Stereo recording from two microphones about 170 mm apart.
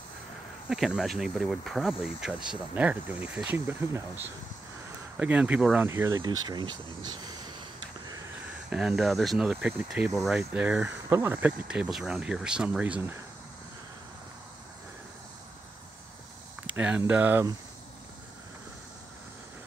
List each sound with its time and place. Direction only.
0.7 s speech: centre (ahead or behind); by 7.5 s 25° right (ahead or behind)
8.6 s speech: 5° right (ahead or behind)
16.6 s speech: 10° right (ahead or behind)